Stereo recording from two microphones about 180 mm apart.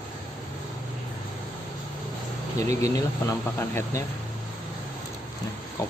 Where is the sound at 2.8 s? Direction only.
20° left (ahead or behind).